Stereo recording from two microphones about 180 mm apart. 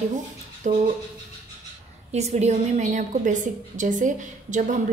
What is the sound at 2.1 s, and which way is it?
A woman's voice, 40° right (ahead or behind).